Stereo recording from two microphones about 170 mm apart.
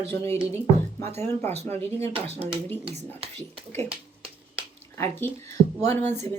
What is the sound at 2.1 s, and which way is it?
Speech, 35° right (ahead or behind).